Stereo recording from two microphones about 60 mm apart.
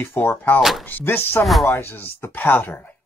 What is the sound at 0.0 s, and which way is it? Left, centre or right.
Speech, left.